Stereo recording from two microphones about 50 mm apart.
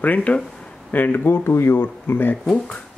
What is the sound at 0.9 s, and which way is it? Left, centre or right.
Speech, left.